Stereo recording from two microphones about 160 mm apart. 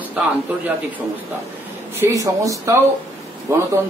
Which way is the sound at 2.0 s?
20° right (ahead or behind).